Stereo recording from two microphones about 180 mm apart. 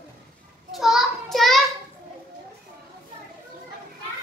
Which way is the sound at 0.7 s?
Centre (ahead or behind).